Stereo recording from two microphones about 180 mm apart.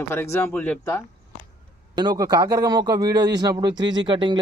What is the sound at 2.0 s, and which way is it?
Speech, 20° right (ahead or behind).